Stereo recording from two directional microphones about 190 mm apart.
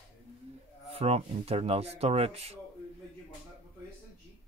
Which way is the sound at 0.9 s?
30° right (ahead or behind).